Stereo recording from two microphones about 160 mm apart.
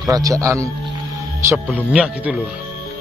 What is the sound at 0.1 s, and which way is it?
Speech, 20° right (ahead or behind).